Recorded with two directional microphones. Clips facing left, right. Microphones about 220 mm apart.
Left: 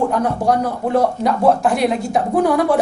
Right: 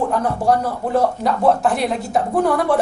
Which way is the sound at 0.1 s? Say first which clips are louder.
Left 1 dB; centre (ahead or behind).